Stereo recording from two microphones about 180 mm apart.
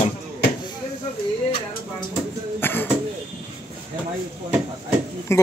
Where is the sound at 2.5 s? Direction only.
10° left (ahead or behind).